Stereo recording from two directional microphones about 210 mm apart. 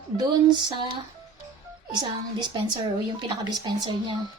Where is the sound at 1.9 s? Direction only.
20° right (ahead or behind).